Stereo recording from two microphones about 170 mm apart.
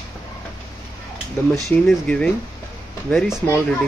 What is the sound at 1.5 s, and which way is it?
Speech, 5° left (ahead or behind).